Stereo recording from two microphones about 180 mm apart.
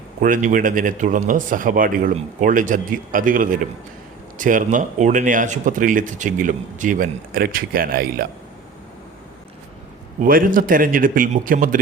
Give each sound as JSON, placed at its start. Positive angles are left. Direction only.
{"t": 0.2, "sound": "speech", "side_deg": -45}
{"t": 10.2, "sound": "speech", "side_deg": -50}